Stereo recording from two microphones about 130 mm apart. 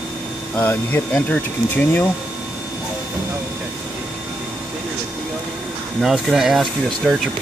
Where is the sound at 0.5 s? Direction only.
15° left (ahead or behind).